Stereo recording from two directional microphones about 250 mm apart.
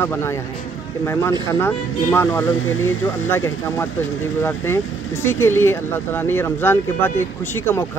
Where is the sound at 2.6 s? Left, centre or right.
Left.